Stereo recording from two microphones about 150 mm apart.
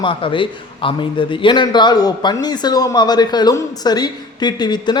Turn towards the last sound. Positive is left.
turn(degrees=30)  # may be behind; listen again after turning